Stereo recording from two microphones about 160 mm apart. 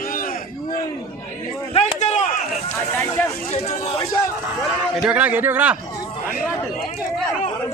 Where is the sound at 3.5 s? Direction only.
40° left (ahead or behind).